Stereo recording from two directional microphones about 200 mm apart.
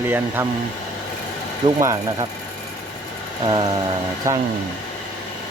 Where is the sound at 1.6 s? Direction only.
20° right (ahead or behind).